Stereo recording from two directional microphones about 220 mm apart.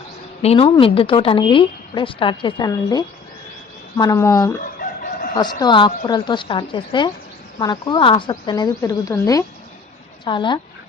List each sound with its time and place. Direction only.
0.4 s a woman's voice: 25° left (ahead or behind)
4.6 s chicken: 40° left (ahead or behind)
5.4 s a woman's voice: 20° left (ahead or behind)